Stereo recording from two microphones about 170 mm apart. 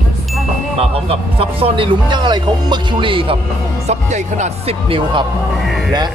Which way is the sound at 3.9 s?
45° right (ahead or behind).